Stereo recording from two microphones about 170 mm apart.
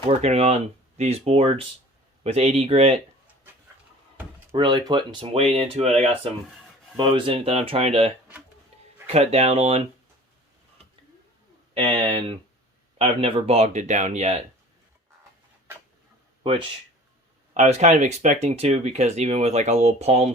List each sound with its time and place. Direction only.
0.2 s speech: 40° right (ahead or behind)
4.5 s speech: 25° right (ahead or behind)
11.7 s speech: 30° right (ahead or behind)
16.4 s speech: 35° right (ahead or behind)